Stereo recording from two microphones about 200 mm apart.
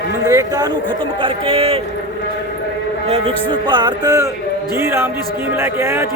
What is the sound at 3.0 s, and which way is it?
A man's voice, 30° right (ahead or behind).